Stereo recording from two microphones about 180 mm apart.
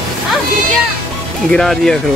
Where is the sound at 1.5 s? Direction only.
5° left (ahead or behind).